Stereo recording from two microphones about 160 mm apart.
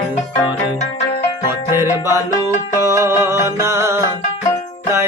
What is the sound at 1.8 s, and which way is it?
Music, 20° right (ahead or behind).